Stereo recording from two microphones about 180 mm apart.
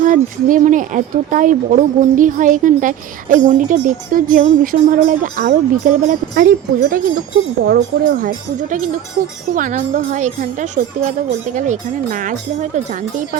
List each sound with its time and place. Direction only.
0.0 s speech: 45° right (ahead or behind)
9.5 s speech: 50° right (ahead or behind)